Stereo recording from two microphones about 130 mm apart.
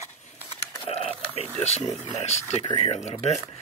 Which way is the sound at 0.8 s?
50° left (ahead or behind).